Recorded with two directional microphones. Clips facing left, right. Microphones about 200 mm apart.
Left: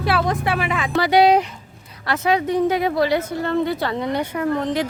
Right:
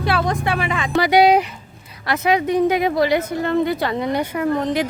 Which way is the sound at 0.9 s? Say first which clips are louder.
Right 1 dB; 15° right (ahead or behind).